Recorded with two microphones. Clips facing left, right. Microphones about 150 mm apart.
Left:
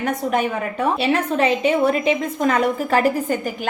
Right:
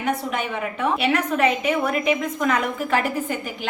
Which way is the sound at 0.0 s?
45° left (ahead or behind).